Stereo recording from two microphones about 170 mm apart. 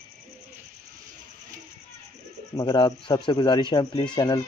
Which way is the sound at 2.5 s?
25° left (ahead or behind).